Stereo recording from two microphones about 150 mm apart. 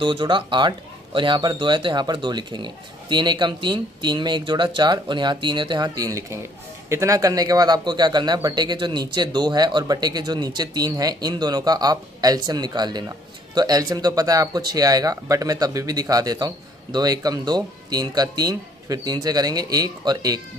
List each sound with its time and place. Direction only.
0.0 s speech: 35° right (ahead or behind)